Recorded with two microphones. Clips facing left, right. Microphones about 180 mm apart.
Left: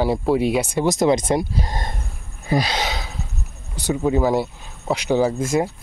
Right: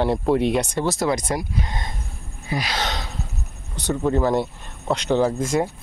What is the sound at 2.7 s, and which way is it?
Speech, 5° left (ahead or behind).